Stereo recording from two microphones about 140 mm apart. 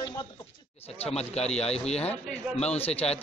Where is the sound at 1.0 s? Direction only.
45° left (ahead or behind).